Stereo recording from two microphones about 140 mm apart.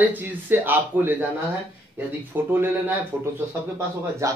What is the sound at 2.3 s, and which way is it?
Speech, 15° right (ahead or behind).